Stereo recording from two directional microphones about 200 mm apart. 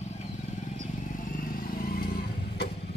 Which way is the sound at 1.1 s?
45° left (ahead or behind).